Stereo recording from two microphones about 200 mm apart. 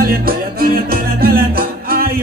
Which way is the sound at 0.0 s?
50° right (ahead or behind).